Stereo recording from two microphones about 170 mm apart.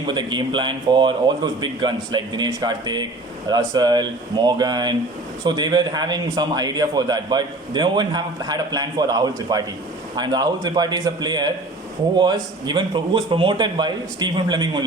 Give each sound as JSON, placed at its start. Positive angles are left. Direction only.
{"t": 0.1, "sound": "a man's voice", "side_deg": -25}